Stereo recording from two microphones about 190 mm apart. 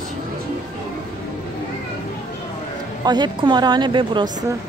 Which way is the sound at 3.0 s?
20° right (ahead or behind).